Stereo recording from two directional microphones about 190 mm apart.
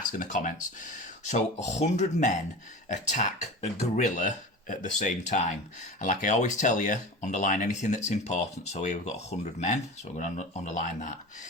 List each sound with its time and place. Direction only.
0.2 s speech: 40° left (ahead or behind)